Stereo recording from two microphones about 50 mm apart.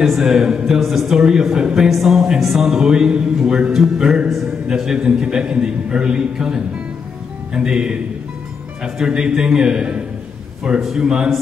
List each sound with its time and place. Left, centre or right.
0.2 s speech: centre
2.7 s speech: centre
10.6 s speech: centre